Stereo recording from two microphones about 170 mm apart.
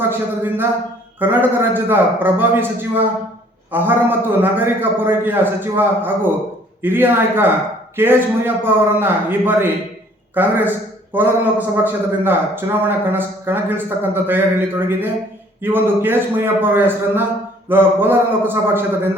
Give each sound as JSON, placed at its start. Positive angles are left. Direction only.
{"t": 0.0, "sound": "a man's voice", "side_deg": -10}